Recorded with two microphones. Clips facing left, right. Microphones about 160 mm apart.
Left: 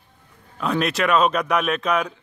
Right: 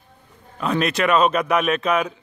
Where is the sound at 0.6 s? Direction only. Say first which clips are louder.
Right 1 dB; centre (ahead or behind).